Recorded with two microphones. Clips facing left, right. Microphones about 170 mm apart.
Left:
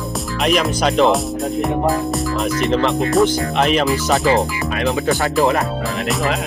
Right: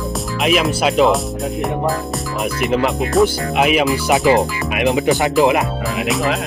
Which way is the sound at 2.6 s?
5° right (ahead or behind).